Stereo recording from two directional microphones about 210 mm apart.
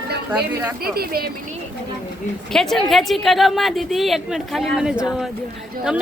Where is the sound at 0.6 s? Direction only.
10° right (ahead or behind).